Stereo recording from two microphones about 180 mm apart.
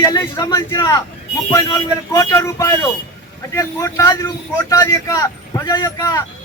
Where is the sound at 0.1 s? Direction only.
20° left (ahead or behind).